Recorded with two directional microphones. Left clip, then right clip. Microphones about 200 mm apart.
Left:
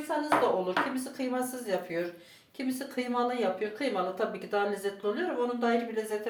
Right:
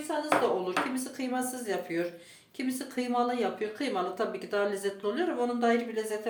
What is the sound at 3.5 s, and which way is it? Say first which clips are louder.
Speech: left 1 dB; 35° right (ahead or behind).